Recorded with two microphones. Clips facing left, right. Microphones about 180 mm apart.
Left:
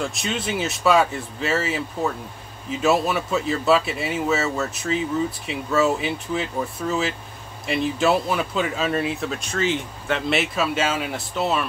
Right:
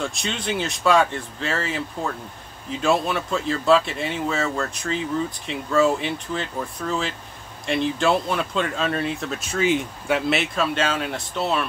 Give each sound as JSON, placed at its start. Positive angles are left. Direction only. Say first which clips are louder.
{"t": 0.0, "sound": "speech", "louder": "left 1 dB", "side_deg": 0}